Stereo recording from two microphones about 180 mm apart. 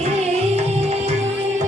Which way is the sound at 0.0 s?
35° right (ahead or behind).